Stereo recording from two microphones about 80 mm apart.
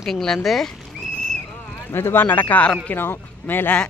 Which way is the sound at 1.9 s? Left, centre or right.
Left.